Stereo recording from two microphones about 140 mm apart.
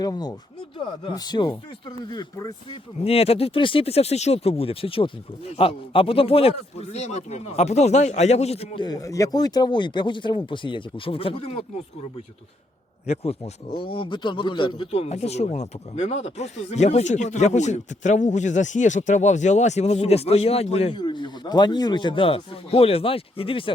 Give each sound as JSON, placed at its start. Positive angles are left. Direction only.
{"t": 0.0, "sound": "speech", "side_deg": 30}
{"t": 3.0, "sound": "speech", "side_deg": 45}
{"t": 8.8, "sound": "speech", "side_deg": 25}
{"t": 13.1, "sound": "speech", "side_deg": 45}
{"t": 14.8, "sound": "speech", "side_deg": 50}
{"t": 20.9, "sound": "speech", "side_deg": 35}